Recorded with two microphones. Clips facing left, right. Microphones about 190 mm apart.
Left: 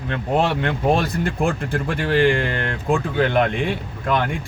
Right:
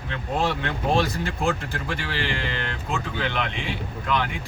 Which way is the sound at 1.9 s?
50° left (ahead or behind).